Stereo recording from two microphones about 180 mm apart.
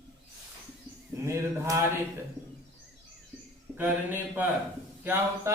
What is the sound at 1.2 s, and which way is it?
Speech, 15° right (ahead or behind).